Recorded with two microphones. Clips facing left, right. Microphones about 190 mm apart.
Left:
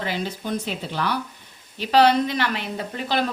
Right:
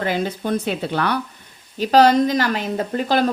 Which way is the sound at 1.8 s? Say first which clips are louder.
Right 4 dB; 40° right (ahead or behind).